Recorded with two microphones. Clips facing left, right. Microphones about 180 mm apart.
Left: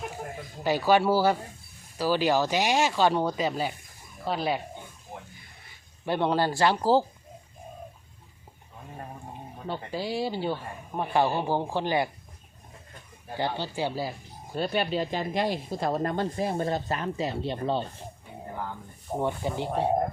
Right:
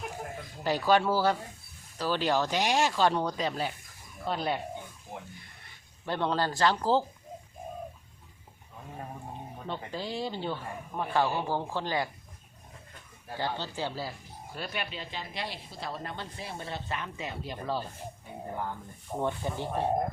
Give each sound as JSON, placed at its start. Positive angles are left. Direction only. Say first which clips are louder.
{"t": 0.6, "sound": "speech", "louder": "left 3 dB", "side_deg": 5}
{"t": 6.1, "sound": "speech", "louder": "left 4 dB", "side_deg": 10}
{"t": 9.9, "sound": "speech", "louder": "left 6 dB", "side_deg": 10}
{"t": 13.3, "sound": "speech", "louder": "left 4 dB", "side_deg": 15}
{"t": 14.5, "sound": "speech", "louder": "left 10 dB", "side_deg": 30}
{"t": 19.2, "sound": "speech", "louder": "left 3 dB", "side_deg": 15}